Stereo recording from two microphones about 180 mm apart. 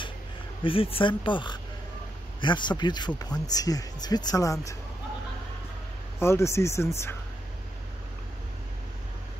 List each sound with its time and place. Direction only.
0.7 s speech: 30° left (ahead or behind)
6.1 s speech: 15° left (ahead or behind)